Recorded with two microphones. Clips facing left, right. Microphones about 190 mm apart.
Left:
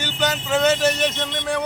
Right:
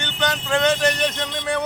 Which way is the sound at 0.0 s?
5° left (ahead or behind).